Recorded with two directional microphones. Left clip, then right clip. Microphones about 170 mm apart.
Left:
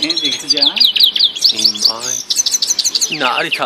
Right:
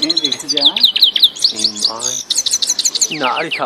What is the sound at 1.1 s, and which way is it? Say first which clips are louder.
Chirp: even; 30° right (ahead or behind).